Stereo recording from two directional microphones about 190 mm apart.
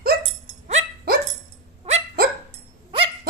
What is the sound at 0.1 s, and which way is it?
Dog, 55° right (ahead or behind).